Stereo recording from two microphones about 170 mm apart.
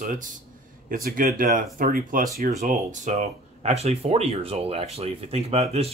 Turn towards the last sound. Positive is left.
turn(degrees=-35)  # may be behind; listen again after turning